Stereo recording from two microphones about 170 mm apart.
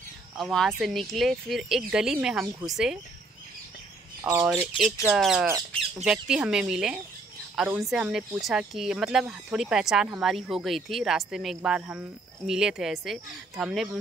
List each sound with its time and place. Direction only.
0.4 s speech: centre (ahead or behind)
4.2 s speech: 15° right (ahead or behind)